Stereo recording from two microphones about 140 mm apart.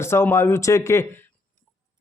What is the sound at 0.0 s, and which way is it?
Speech, 20° left (ahead or behind).